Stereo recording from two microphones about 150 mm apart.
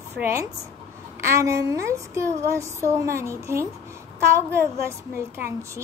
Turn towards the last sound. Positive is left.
turn(degrees=-15)  # may be behind; listen again after turning